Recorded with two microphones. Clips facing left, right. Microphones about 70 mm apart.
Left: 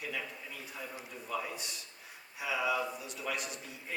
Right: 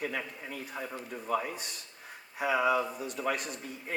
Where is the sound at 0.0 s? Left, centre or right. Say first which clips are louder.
Right 5 dB; right.